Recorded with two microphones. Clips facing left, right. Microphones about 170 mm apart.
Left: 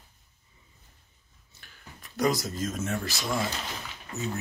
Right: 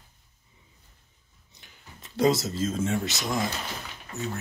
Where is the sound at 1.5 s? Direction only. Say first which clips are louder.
Left 1 dB; 20° right (ahead or behind).